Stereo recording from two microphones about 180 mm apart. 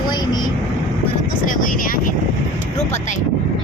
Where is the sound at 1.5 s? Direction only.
50° left (ahead or behind).